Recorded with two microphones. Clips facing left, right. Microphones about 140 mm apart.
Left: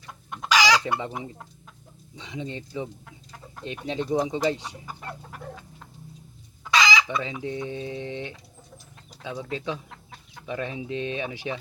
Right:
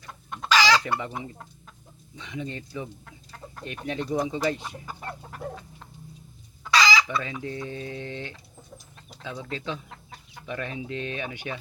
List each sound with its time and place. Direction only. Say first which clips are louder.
0.1 s chicken: even; 15° left (ahead or behind)
2.1 s speech: even; 20° left (ahead or behind)
5.3 s dog: right 3 dB; 5° left (ahead or behind)
6.7 s speech: even; 20° left (ahead or behind)